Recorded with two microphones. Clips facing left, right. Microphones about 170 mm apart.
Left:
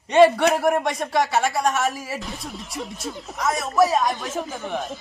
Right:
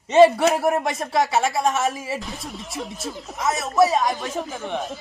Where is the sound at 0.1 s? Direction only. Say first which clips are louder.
Right 1 dB; 5° right (ahead or behind).